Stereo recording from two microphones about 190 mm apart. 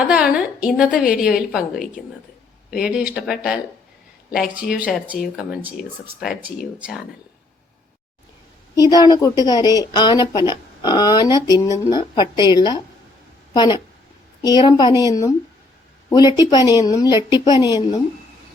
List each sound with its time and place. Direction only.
0.1 s speech: 5° right (ahead or behind)
2.6 s speech: 5° right (ahead or behind)
6.7 s speech: 5° right (ahead or behind)
8.7 s a woman's voice: 20° left (ahead or behind)